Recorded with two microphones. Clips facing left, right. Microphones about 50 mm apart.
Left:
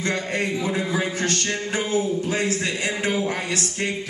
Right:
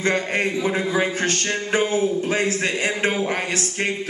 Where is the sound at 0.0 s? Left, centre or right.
Right.